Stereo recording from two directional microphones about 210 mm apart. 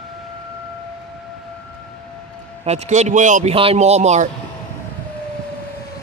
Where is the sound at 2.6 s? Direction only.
30° right (ahead or behind).